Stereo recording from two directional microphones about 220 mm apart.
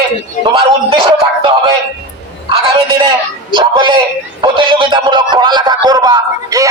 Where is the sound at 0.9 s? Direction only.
25° right (ahead or behind).